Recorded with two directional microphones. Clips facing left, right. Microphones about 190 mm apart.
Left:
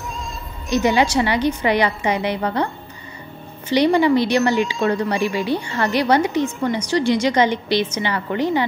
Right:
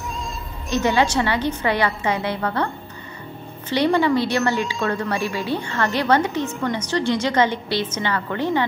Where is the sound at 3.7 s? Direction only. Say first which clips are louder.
Left 3 dB; 15° left (ahead or behind).